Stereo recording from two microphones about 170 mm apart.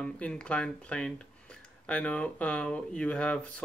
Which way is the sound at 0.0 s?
5° left (ahead or behind).